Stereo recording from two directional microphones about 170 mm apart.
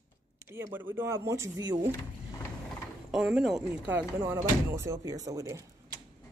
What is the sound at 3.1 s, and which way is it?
Speech, 5° right (ahead or behind).